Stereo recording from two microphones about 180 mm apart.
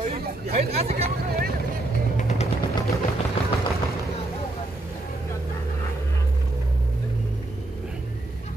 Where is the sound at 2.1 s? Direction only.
40° left (ahead or behind).